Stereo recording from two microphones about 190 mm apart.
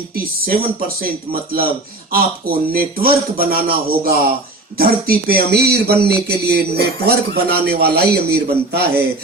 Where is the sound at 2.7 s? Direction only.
50° right (ahead or behind).